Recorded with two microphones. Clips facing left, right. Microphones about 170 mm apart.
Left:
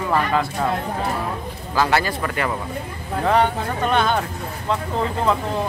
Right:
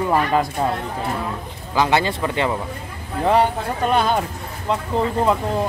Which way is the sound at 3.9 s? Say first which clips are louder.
Right 1 dB; 5° right (ahead or behind).